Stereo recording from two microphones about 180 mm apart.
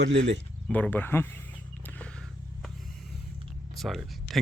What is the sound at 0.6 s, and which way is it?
Speech, 5° left (ahead or behind).